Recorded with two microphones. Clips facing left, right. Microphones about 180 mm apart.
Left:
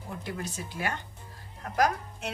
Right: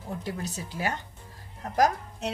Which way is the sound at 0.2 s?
35° right (ahead or behind).